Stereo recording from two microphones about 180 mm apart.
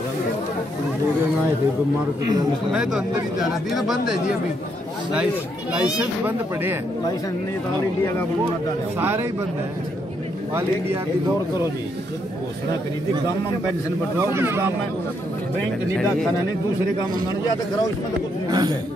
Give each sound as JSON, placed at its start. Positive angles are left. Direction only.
{"t": 2.7, "sound": "speech", "side_deg": -5}
{"t": 8.9, "sound": "speech", "side_deg": -10}
{"t": 14.3, "sound": "speech", "side_deg": -15}
{"t": 18.5, "sound": "speech", "side_deg": -25}